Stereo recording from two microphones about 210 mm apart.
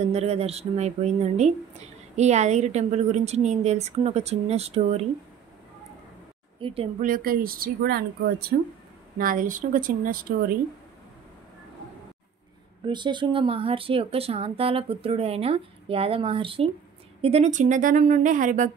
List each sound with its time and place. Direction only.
0.1 s speech: 30° right (ahead or behind)
6.6 s speech: 30° right (ahead or behind)
12.8 s speech: 20° right (ahead or behind); by 18.7 s 40° right (ahead or behind)